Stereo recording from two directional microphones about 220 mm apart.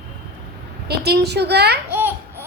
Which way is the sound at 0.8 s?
45° right (ahead or behind).